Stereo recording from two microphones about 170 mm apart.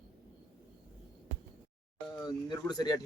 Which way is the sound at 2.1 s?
25° left (ahead or behind).